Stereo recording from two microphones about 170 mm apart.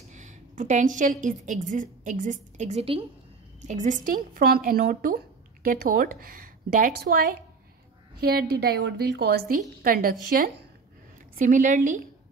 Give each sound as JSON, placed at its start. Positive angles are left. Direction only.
{"t": 0.1, "sound": "a sound", "side_deg": -45}
{"t": 1.2, "sound": "a woman's voice", "side_deg": -45}
{"t": 3.6, "sound": "speech", "side_deg": -45}
{"t": 8.2, "sound": "a woman's voice", "side_deg": -65}
{"t": 9.8, "sound": "a woman's voice", "side_deg": -55}